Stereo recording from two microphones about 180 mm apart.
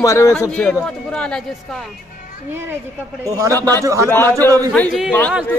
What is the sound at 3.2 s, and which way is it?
Speech, 20° right (ahead or behind).